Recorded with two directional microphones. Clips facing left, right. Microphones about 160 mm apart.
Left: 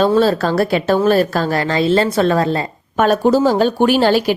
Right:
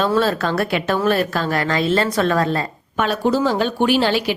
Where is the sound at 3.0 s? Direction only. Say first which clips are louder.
Left 5 dB; 45° left (ahead or behind).